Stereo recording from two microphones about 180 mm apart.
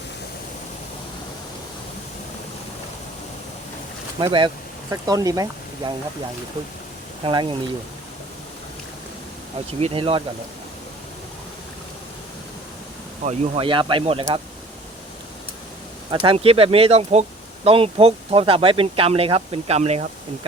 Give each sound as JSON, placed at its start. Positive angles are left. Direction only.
{"t": 4.2, "sound": "speech", "side_deg": -25}
{"t": 7.3, "sound": "speech", "side_deg": -25}
{"t": 9.8, "sound": "speech", "side_deg": -30}
{"t": 13.2, "sound": "speech", "side_deg": -35}
{"t": 16.1, "sound": "speech", "side_deg": -30}